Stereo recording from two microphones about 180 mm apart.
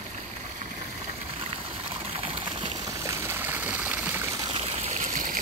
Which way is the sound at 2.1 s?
30° right (ahead or behind).